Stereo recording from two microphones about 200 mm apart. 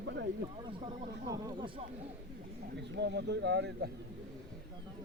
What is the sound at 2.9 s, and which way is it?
Speech, 60° right (ahead or behind).